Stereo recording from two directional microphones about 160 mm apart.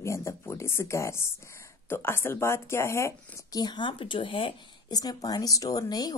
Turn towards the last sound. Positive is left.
turn(degrees=25)  # may be behind; listen again after turning